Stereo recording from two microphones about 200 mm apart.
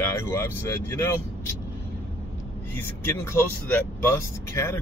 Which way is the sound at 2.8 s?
15° left (ahead or behind).